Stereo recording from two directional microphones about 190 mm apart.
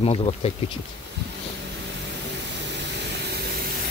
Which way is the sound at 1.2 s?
60° right (ahead or behind).